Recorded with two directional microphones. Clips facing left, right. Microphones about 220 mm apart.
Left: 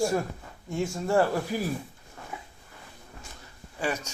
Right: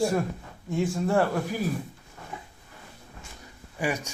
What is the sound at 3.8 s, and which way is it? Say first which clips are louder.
Speech: right 2 dB; 10° right (ahead or behind).